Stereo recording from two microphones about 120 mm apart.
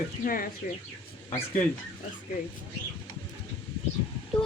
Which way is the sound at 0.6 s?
90° left.